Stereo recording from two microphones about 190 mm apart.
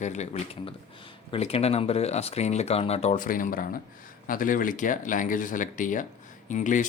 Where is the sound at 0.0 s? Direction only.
35° left (ahead or behind).